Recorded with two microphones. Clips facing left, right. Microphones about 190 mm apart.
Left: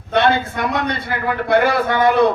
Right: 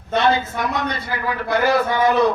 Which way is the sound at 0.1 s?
60° left (ahead or behind).